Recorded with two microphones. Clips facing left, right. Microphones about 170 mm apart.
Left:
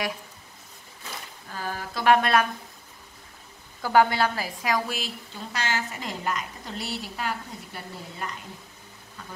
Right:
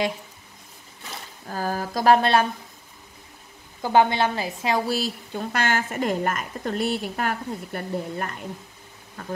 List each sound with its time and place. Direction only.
1.5 s speech: 40° right (ahead or behind)
3.8 s a woman's voice: 20° right (ahead or behind); by 5.1 s 35° right (ahead or behind)
5.3 s a woman's voice: 55° right (ahead or behind)